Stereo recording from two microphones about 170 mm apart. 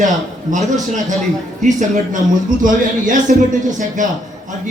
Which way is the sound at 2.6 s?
50° right (ahead or behind).